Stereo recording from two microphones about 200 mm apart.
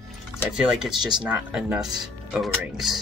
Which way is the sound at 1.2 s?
5° right (ahead or behind).